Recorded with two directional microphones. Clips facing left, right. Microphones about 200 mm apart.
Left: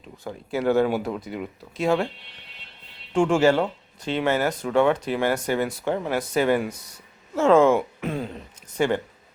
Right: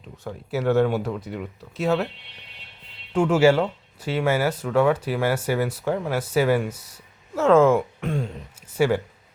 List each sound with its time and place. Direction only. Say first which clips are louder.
0.3 s speech: even; centre (ahead or behind)
3.1 s speech: right 1 dB; 5° right (ahead or behind)